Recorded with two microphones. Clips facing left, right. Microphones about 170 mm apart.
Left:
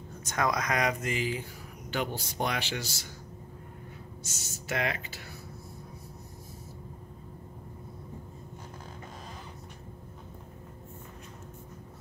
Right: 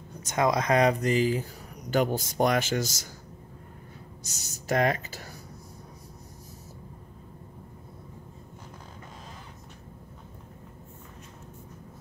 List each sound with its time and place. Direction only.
0.2 s speech: 20° right (ahead or behind); by 3.1 s 45° right (ahead or behind)
4.2 s speech: 40° right (ahead or behind)